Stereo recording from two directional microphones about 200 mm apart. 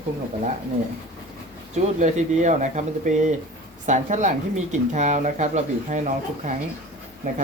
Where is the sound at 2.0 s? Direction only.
35° right (ahead or behind).